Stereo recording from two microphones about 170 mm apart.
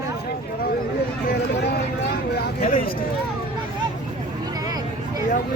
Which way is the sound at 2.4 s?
60° left (ahead or behind).